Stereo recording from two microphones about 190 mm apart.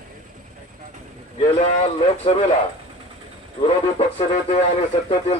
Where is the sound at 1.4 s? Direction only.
35° left (ahead or behind).